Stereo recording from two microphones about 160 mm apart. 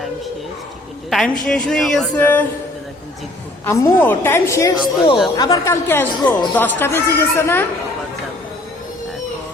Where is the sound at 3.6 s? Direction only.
15° left (ahead or behind).